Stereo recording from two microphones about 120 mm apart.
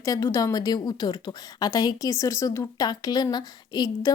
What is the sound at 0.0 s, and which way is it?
A woman's voice, 30° left (ahead or behind).